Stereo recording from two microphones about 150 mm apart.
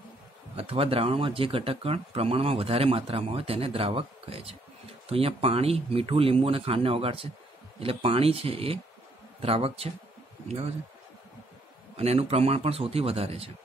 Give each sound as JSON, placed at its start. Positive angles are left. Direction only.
{"t": 0.6, "sound": "speech", "side_deg": -40}
{"t": 12.0, "sound": "speech", "side_deg": -45}